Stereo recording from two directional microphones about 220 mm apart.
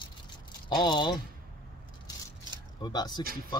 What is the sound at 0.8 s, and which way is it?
Speech, 20° left (ahead or behind).